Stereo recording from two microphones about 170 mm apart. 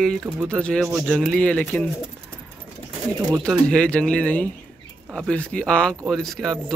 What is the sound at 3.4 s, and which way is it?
Speech, 5° left (ahead or behind).